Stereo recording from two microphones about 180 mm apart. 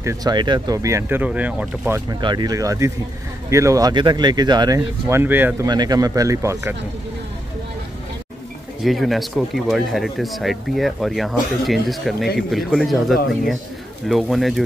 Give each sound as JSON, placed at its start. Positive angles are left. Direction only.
{"t": 0.0, "sound": "speech", "side_deg": -20}
{"t": 2.0, "sound": "speech", "side_deg": -25}
{"t": 5.7, "sound": "speech", "side_deg": -20}
{"t": 8.8, "sound": "speech", "side_deg": 0}